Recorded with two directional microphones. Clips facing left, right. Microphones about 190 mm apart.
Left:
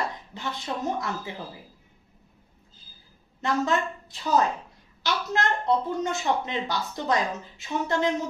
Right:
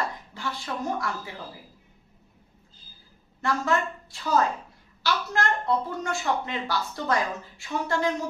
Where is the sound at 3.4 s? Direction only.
20° left (ahead or behind).